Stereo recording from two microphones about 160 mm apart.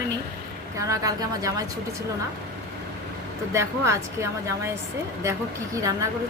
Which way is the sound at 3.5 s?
15° right (ahead or behind).